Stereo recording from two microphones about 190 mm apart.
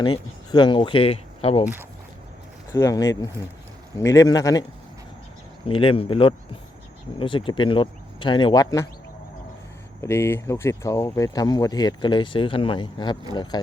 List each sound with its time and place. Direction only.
0.0 s speech: 25° left (ahead or behind)
1.6 s speech: 10° right (ahead or behind)
2.7 s speech: 15° left (ahead or behind)
5.6 s speech: 30° left (ahead or behind)
10.0 s speech: 15° left (ahead or behind)